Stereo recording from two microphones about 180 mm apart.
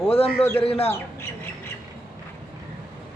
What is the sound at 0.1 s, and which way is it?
Speech, 30° left (ahead or behind).